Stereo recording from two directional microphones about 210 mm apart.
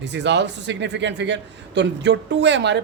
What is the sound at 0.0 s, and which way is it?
A man's voice, 55° right (ahead or behind).